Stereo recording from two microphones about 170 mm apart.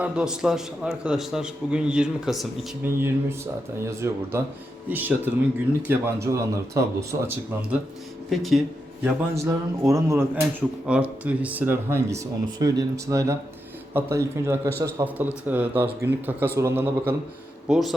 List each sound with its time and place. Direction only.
0.0 s a man's voice: 5° right (ahead or behind)
2.8 s speech: 15° right (ahead or behind)
8.3 s a man's voice: centre (ahead or behind)
9.3 s speech: 20° right (ahead or behind)
10.8 s speech: 5° right (ahead or behind)
17.7 s a man's voice: centre (ahead or behind)